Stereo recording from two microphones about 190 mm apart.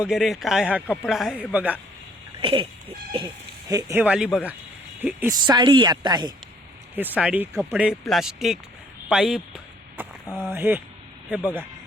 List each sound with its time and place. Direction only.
0.0 s speech: centre (ahead or behind)
2.4 s a sound: 25° right (ahead or behind)
3.7 s speech: 15° right (ahead or behind)
7.2 s speech: 5° right (ahead or behind)
10.0 s a sound: 10° right (ahead or behind)
10.5 s speech: 10° right (ahead or behind)